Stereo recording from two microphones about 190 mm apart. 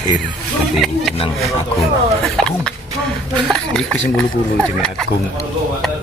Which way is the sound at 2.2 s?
5° left (ahead or behind).